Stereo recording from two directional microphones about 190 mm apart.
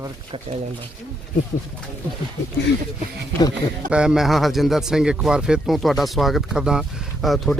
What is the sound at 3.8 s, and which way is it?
Speech, 5° right (ahead or behind).